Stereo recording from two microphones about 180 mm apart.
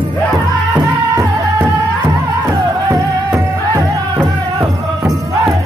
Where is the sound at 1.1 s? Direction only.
15° right (ahead or behind).